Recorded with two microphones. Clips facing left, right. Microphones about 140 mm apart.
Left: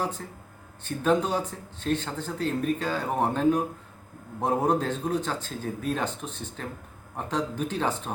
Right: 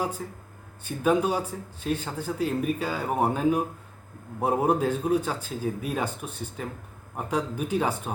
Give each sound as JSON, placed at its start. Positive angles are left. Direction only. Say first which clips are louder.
{"t": 0.0, "sound": "speech", "louder": "right 1 dB", "side_deg": -10}